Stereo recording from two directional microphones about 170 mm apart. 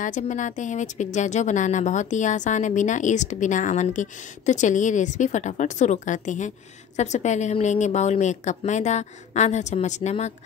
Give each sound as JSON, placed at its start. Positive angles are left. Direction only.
{"t": 0.0, "sound": "speech", "side_deg": 45}